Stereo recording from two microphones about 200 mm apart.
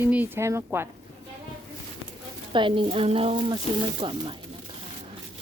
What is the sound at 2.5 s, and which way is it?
Speech, 25° right (ahead or behind).